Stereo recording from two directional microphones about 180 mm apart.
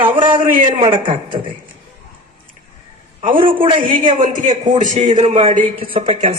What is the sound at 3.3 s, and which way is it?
Speech, 30° right (ahead or behind).